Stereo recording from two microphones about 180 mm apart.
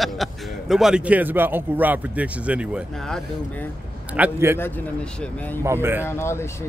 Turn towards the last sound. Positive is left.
turn(degrees=15)  # may be behind; listen again after turning